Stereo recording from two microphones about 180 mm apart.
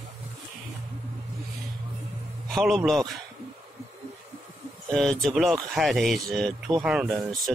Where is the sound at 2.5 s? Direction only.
Centre (ahead or behind).